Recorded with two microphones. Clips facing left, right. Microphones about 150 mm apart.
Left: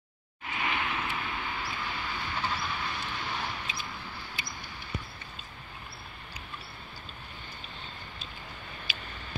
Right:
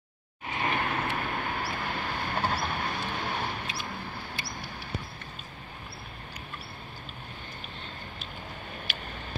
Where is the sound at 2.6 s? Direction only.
50° right (ahead or behind).